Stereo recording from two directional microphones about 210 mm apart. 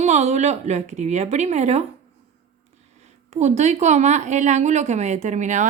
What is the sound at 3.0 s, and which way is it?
Speech, 30° right (ahead or behind).